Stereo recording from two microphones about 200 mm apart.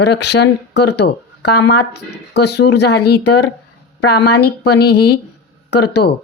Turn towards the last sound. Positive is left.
turn(degrees=55)  # may be behind; listen again after turning